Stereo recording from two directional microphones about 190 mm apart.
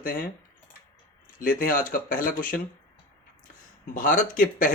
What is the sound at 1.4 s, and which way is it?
Speech, 45° left (ahead or behind).